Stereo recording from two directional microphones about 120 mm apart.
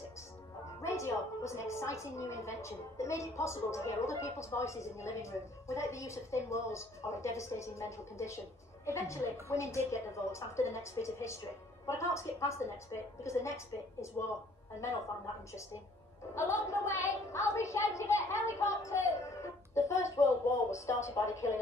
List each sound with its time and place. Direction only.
0.8 s a woman's voice: 25° left (ahead or behind)
16.3 s a woman's voice: 25° left (ahead or behind)